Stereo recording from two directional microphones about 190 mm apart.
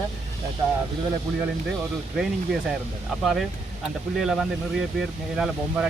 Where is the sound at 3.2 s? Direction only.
Centre (ahead or behind).